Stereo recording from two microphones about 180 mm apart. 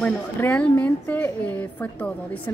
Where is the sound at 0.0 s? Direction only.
10° left (ahead or behind).